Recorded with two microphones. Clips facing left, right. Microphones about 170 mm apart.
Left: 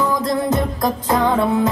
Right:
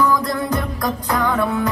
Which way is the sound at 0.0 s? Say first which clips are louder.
Even; 20° left (ahead or behind).